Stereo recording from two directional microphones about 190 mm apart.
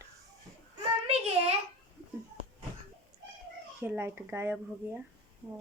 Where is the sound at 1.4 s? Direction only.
35° right (ahead or behind).